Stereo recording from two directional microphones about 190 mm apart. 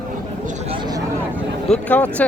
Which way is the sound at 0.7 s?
20° right (ahead or behind).